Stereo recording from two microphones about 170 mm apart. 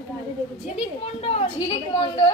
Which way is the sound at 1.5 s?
25° left (ahead or behind).